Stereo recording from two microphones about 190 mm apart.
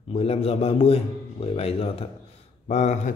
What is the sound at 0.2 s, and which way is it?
A man's voice, 30° left (ahead or behind).